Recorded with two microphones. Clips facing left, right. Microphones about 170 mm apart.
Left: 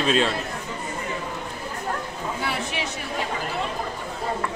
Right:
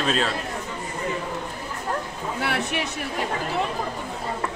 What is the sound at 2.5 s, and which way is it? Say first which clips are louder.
Speech: right 2 dB; 60° right (ahead or behind).